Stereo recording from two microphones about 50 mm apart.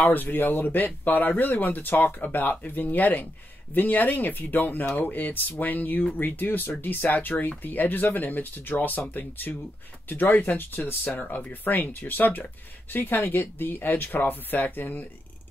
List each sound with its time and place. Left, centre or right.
0.0 s speech: left